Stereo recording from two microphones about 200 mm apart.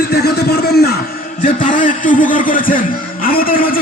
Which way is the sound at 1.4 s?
40° left (ahead or behind).